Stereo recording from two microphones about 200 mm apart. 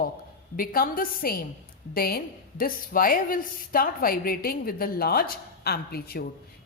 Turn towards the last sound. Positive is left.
turn(degrees=50)  # may be behind; listen again after turning